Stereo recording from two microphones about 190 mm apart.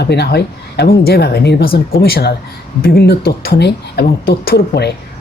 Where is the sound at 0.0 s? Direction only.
60° left (ahead or behind).